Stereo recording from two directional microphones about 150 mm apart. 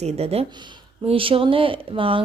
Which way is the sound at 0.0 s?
45° right (ahead or behind).